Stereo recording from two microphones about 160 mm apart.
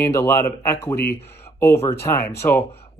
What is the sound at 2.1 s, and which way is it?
Speech, 15° left (ahead or behind).